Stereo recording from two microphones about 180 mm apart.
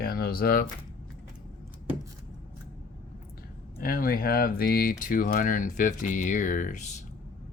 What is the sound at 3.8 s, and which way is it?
Speech, 55° left (ahead or behind).